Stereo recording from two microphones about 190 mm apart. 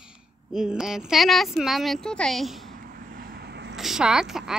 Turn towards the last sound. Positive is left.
turn(degrees=0)  # may be behind; listen again after turning